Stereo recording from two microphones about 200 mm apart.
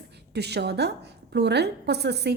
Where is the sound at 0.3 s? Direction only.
55° right (ahead or behind).